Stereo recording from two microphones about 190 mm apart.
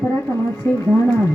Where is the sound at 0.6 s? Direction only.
15° left (ahead or behind).